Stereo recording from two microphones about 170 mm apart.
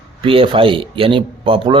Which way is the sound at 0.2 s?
30° right (ahead or behind).